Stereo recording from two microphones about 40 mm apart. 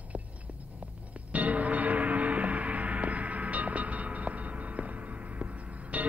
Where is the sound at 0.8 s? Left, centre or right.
Right.